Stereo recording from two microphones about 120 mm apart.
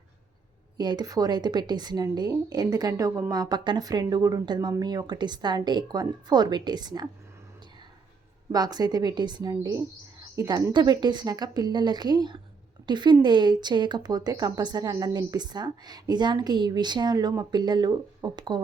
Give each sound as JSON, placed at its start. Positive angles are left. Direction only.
{"t": 0.8, "sound": "speech", "side_deg": -35}
{"t": 8.5, "sound": "speech", "side_deg": -35}